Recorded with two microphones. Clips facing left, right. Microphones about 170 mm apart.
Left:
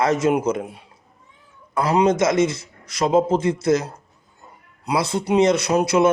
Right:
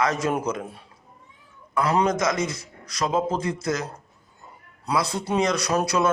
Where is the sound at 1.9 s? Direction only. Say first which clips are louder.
Left 7 dB; 25° left (ahead or behind).